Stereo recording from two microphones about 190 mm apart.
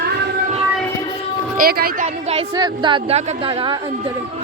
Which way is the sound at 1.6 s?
50° right (ahead or behind).